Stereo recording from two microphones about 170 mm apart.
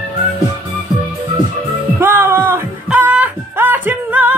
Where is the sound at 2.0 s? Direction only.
15° right (ahead or behind).